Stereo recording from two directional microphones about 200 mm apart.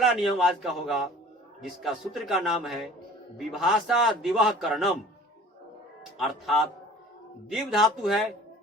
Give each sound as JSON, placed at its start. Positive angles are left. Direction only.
{"t": 0.0, "sound": "a sound", "side_deg": 0}
{"t": 0.3, "sound": "a man's voice", "side_deg": 0}
{"t": 6.1, "sound": "a man's voice", "side_deg": 0}